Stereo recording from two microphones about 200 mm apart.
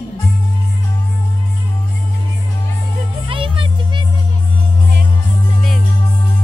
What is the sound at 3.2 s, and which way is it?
Music, 25° right (ahead or behind).